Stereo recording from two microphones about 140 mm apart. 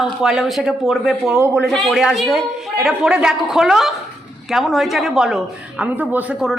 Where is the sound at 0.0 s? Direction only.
5° right (ahead or behind).